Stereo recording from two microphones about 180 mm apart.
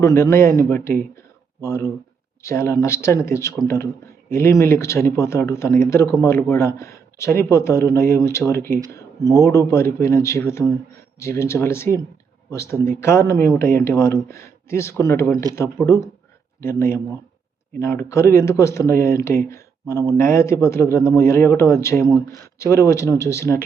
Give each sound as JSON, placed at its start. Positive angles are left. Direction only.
{"t": 0.0, "sound": "speech", "side_deg": 15}